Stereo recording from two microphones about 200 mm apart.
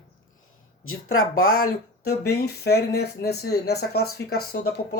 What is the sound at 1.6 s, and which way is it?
Speech, 50° left (ahead or behind).